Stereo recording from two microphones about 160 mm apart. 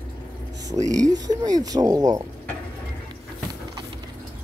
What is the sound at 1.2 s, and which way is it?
Speech, 25° right (ahead or behind).